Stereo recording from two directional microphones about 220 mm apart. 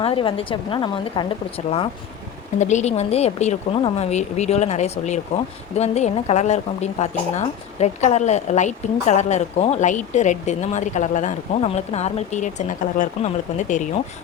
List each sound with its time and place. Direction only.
0.0 s a woman's voice: 25° left (ahead or behind)